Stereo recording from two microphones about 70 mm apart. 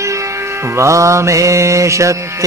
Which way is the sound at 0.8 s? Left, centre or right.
Right.